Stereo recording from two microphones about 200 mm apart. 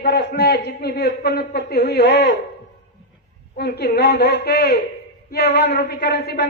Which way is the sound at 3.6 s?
55° left (ahead or behind).